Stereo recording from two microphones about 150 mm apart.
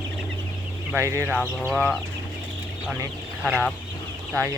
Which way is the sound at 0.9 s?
15° right (ahead or behind).